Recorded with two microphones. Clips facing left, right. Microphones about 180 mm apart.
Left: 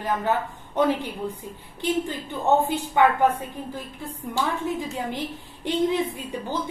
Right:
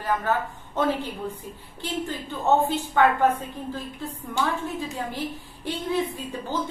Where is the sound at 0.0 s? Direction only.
15° left (ahead or behind).